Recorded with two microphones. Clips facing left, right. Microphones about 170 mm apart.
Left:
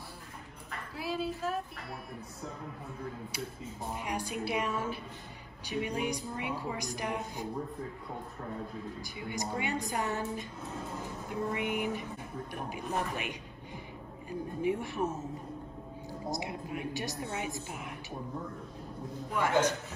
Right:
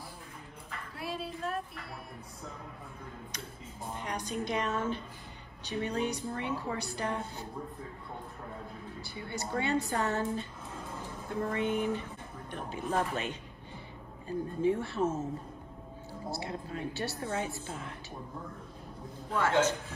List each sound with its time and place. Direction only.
0.9 s speech: centre (ahead or behind)
3.9 s a woman's voice: 10° left (ahead or behind)
9.0 s a woman's voice: 15° left (ahead or behind)
14.6 s a woman's voice: 15° left (ahead or behind)
19.3 s a woman's voice: 15° left (ahead or behind)